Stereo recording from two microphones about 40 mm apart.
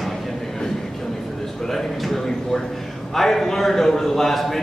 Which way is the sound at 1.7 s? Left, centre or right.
Centre.